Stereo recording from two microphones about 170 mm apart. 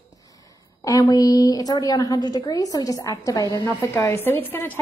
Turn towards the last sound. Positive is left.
turn(degrees=15)  # may be behind; listen again after turning